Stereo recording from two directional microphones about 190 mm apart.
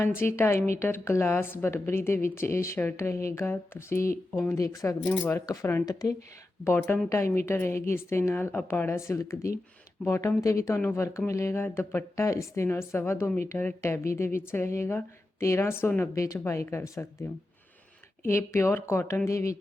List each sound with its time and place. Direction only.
0.2 s speech: 10° left (ahead or behind)
18.3 s speech: 15° left (ahead or behind)